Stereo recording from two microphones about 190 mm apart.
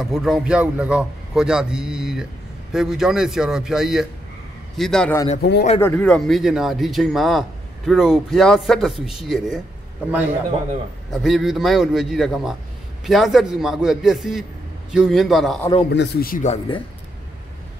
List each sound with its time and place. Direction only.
0.0 s a man's voice: centre (ahead or behind)
5.4 s speech: 60° left (ahead or behind)
5.8 s a man's voice: 10° left (ahead or behind)
11.2 s a man's voice: centre (ahead or behind)
15.9 s speech: 60° left (ahead or behind)
16.4 s speech: 25° left (ahead or behind)